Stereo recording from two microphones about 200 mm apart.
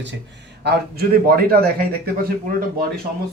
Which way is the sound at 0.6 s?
50° right (ahead or behind).